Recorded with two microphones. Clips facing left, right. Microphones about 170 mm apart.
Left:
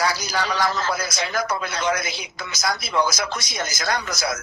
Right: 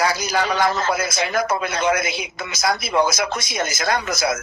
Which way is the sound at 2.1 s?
25° right (ahead or behind).